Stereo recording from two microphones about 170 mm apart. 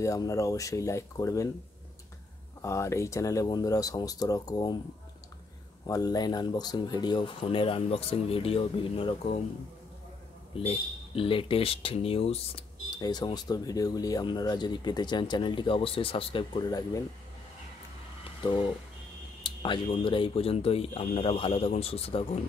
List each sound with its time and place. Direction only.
0.0 s speech: 20° left (ahead or behind)
2.6 s speech: 15° left (ahead or behind)
5.9 s speech: 20° left (ahead or behind)
10.5 s speech: 35° left (ahead or behind)
18.4 s speech: 30° left (ahead or behind)